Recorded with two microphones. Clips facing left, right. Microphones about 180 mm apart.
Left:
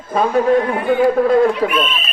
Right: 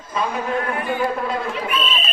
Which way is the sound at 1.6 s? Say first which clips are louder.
Left 8 dB; 60° left (ahead or behind).